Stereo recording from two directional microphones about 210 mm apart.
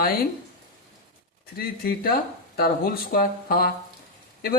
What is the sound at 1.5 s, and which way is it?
Speech, 45° left (ahead or behind).